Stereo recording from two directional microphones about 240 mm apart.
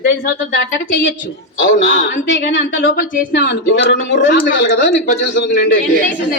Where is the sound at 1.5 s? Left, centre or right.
Left.